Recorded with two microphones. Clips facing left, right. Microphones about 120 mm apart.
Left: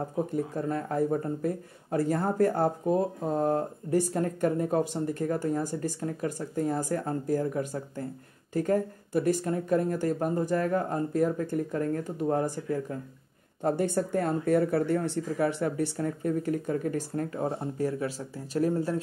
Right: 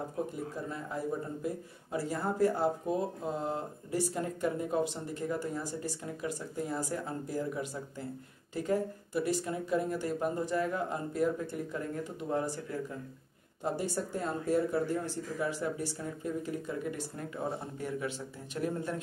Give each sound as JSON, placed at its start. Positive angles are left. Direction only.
{"t": 0.7, "sound": "speech", "side_deg": 55}
{"t": 13.7, "sound": "speech", "side_deg": 55}